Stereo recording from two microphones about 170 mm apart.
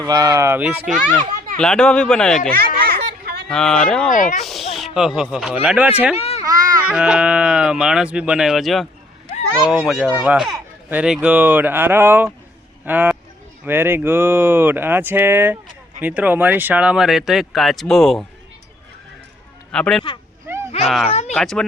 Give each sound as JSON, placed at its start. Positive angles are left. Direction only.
{"t": 0.0, "sound": "speech", "side_deg": -20}
{"t": 0.9, "sound": "speech", "side_deg": 0}
{"t": 2.5, "sound": "children playing", "side_deg": -60}
{"t": 3.5, "sound": "speech", "side_deg": 5}
{"t": 4.1, "sound": "speech", "side_deg": 50}
{"t": 4.4, "sound": "speech", "side_deg": 0}
{"t": 6.1, "sound": "a child's voice", "side_deg": 35}
{"t": 6.4, "sound": "a sound", "side_deg": -20}
{"t": 6.8, "sound": "speech", "side_deg": -5}
{"t": 19.7, "sound": "speech", "side_deg": 5}